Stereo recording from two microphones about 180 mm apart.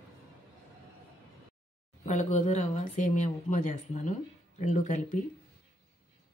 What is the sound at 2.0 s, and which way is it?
Speech, 40° left (ahead or behind).